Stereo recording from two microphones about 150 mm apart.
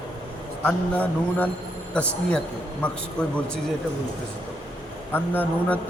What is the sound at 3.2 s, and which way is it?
Speech, 5° left (ahead or behind).